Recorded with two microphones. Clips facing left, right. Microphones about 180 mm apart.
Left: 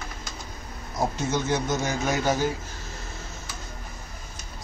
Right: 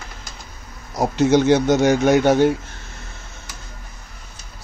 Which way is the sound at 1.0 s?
75° right (ahead or behind).